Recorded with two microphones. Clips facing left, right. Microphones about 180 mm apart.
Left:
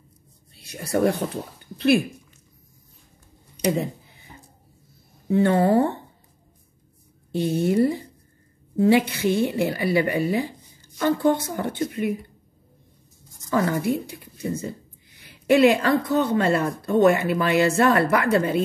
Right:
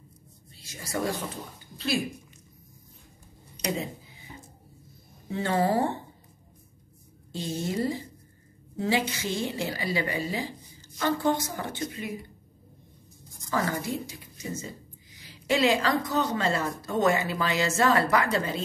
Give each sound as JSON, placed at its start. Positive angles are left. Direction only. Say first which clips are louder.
{"t": 0.6, "sound": "speech", "louder": "left 9 dB", "side_deg": 60}
{"t": 5.3, "sound": "a woman's voice", "louder": "left 7 dB", "side_deg": 55}
{"t": 7.3, "sound": "a woman's voice", "louder": "left 10 dB", "side_deg": 60}
{"t": 13.7, "sound": "a woman's voice", "louder": "left 7 dB", "side_deg": 60}